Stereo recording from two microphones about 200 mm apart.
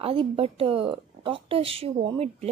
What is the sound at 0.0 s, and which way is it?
A woman's voice, 30° right (ahead or behind).